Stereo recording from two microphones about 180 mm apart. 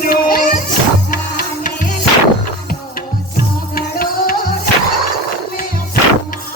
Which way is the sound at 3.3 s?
55° left (ahead or behind).